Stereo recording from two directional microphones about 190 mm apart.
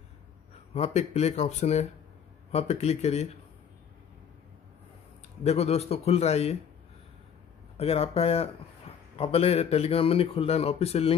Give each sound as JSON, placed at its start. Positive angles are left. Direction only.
{"t": 0.7, "sound": "a man's voice", "side_deg": 35}
{"t": 5.4, "sound": "a man's voice", "side_deg": 35}
{"t": 7.7, "sound": "a man's voice", "side_deg": 35}